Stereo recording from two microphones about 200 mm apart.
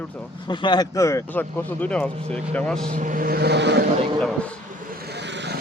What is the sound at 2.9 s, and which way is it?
Vehicle, 40° right (ahead or behind).